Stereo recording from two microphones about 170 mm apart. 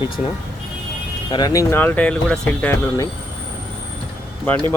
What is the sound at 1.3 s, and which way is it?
Speech, 20° left (ahead or behind).